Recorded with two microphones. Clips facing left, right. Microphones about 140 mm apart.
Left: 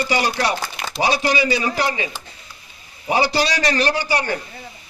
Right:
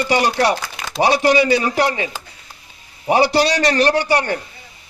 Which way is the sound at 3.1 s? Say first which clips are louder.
Right 4 dB; 65° right (ahead or behind).